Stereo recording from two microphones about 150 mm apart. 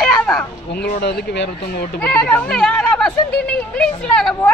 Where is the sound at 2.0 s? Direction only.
10° left (ahead or behind).